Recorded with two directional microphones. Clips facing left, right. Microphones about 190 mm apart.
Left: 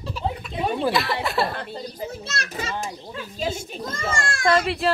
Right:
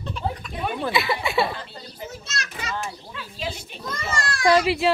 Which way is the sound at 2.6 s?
25° left (ahead or behind).